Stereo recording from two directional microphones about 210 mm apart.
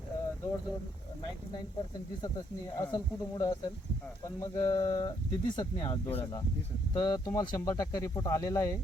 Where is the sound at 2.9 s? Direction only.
20° left (ahead or behind).